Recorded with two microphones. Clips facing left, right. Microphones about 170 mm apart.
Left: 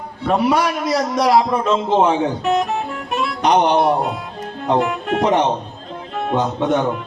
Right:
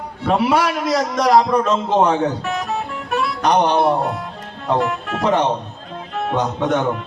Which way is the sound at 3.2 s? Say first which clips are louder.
Left 1 dB; 15° left (ahead or behind).